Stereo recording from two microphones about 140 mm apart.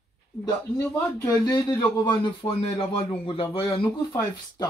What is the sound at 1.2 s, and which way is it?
A man's voice, 25° left (ahead or behind).